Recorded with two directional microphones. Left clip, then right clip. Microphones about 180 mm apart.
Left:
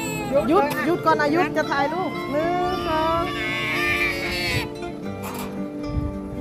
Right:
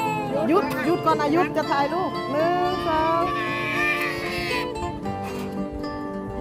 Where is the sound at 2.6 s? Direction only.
5° right (ahead or behind).